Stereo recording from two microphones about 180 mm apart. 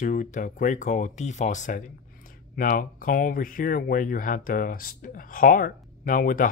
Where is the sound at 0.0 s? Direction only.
45° left (ahead or behind).